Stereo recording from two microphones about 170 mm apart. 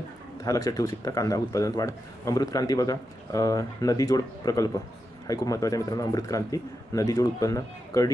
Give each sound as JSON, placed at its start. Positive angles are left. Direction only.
{"t": 0.4, "sound": "a man's voice", "side_deg": 20}